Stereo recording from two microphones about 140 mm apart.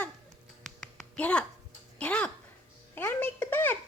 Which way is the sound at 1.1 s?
10° left (ahead or behind).